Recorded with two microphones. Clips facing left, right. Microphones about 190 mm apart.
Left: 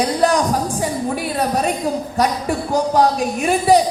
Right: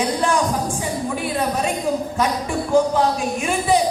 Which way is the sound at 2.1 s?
40° left (ahead or behind).